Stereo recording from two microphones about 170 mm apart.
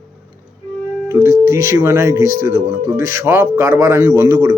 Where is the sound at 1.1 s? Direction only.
15° right (ahead or behind).